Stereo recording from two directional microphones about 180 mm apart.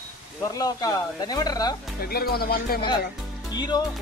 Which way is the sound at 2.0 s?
60° left (ahead or behind).